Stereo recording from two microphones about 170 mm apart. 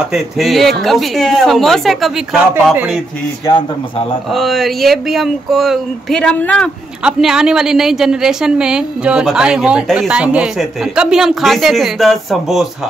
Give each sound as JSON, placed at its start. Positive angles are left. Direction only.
{"t": 0.1, "sound": "a woman's voice", "side_deg": 0}
{"t": 2.5, "sound": "speech", "side_deg": -10}
{"t": 3.4, "sound": "speech", "side_deg": 30}
{"t": 4.3, "sound": "a woman's voice", "side_deg": 0}